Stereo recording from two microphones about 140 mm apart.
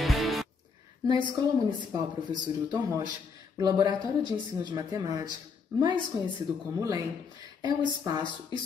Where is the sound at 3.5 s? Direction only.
30° right (ahead or behind).